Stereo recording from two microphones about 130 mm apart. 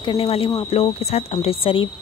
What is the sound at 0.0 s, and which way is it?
Speech, 40° left (ahead or behind).